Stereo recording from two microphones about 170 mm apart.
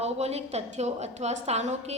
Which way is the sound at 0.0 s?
40° right (ahead or behind).